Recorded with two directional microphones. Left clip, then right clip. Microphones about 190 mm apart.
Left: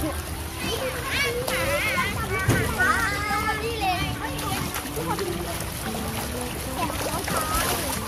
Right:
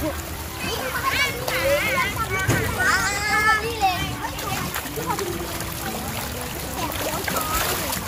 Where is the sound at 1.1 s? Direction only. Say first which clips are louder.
Left 2 dB; 55° left (ahead or behind).